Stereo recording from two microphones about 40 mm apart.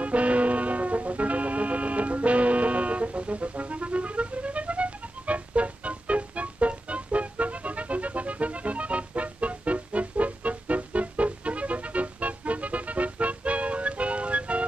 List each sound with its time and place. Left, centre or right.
0.0 s music: right